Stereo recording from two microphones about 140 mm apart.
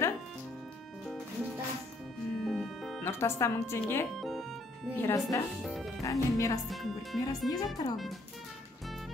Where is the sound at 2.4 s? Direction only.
Centre (ahead or behind).